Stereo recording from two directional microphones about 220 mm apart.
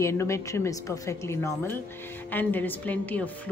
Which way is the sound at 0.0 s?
15° left (ahead or behind).